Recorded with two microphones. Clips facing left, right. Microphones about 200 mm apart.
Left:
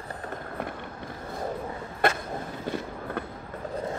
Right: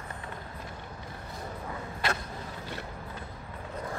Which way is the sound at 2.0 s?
55° left (ahead or behind).